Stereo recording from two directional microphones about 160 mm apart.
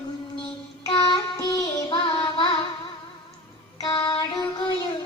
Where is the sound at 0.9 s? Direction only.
25° left (ahead or behind).